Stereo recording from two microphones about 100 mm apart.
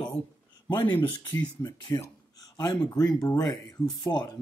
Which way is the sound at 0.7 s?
50° left (ahead or behind).